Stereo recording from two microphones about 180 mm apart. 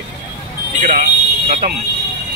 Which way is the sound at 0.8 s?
50° right (ahead or behind).